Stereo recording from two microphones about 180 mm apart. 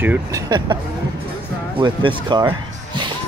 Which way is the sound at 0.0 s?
10° right (ahead or behind).